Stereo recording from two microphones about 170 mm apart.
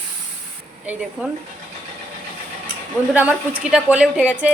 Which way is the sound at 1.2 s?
5° right (ahead or behind).